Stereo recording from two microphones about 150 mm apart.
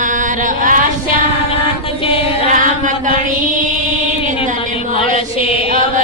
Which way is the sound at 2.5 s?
60° right (ahead or behind).